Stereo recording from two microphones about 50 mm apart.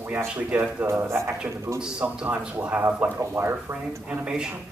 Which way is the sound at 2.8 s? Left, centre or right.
Right.